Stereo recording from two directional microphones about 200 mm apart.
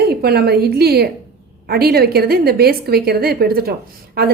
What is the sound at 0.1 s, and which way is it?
A woman's voice, 50° right (ahead or behind).